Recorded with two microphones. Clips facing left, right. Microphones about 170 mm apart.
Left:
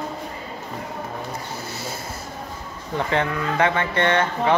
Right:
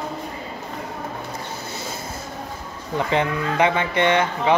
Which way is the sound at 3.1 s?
15° right (ahead or behind).